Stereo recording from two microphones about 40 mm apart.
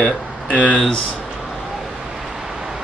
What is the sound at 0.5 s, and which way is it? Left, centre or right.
Speech, left.